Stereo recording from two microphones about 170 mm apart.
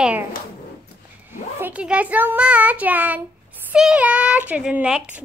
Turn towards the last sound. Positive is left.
turn(degrees=-5)  # may be behind; listen again after turning